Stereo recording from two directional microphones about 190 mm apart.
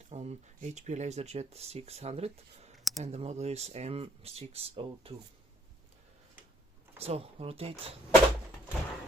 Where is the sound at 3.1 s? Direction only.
35° right (ahead or behind).